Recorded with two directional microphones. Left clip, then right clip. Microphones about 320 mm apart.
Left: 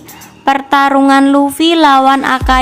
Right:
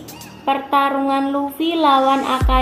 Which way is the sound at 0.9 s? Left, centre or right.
Left.